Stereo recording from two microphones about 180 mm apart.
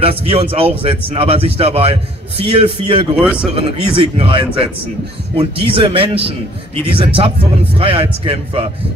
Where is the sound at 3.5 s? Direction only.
30° right (ahead or behind).